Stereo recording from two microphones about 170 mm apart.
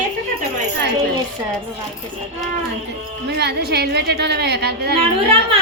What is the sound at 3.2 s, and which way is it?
A woman's voice, 75° right (ahead or behind).